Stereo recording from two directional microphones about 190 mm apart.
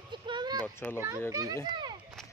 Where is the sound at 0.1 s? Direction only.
25° right (ahead or behind).